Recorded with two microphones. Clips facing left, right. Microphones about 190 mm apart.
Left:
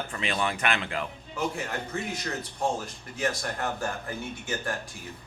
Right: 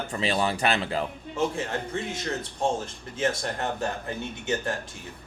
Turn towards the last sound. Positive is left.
turn(degrees=-20)  # may be behind; listen again after turning